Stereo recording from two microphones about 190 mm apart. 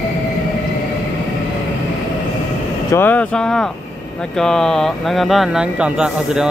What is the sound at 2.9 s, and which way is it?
Speech, 10° left (ahead or behind).